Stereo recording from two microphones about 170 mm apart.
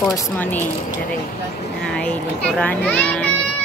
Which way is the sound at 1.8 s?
5° left (ahead or behind).